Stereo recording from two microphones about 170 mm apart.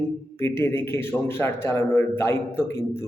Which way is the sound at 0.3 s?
15° left (ahead or behind).